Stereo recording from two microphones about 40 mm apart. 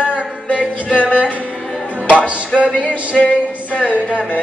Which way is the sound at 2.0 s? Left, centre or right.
Right.